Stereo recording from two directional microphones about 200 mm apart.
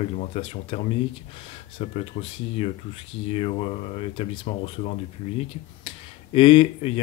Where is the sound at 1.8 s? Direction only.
30° left (ahead or behind).